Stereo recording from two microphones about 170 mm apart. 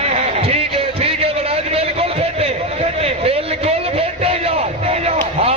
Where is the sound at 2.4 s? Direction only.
35° right (ahead or behind).